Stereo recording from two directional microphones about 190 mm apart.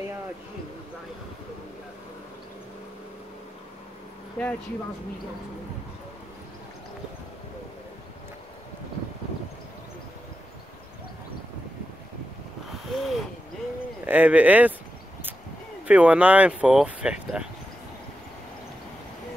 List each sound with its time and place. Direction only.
4.4 s speech: 5° left (ahead or behind)
12.9 s a sound: centre (ahead or behind)
14.0 s speech: 10° right (ahead or behind)
15.9 s speech: 5° right (ahead or behind)